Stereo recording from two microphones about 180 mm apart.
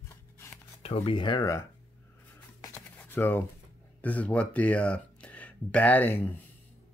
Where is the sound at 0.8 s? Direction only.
30° left (ahead or behind).